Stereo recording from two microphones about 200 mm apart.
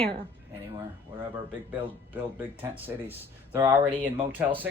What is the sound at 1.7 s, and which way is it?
Speech, 10° right (ahead or behind).